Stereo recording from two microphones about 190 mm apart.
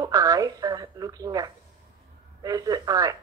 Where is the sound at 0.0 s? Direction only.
20° right (ahead or behind).